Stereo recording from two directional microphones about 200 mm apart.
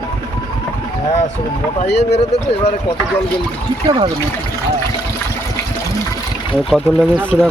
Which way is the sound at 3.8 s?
25° right (ahead or behind).